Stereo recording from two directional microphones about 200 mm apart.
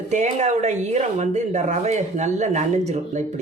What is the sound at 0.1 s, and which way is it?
Speech, 35° right (ahead or behind).